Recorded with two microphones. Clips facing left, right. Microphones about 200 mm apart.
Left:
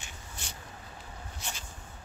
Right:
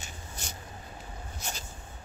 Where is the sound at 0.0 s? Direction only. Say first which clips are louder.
Right 3 dB; 40° right (ahead or behind).